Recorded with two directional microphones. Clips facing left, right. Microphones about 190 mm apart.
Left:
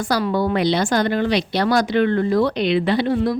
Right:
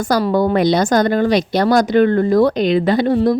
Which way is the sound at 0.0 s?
40° right (ahead or behind).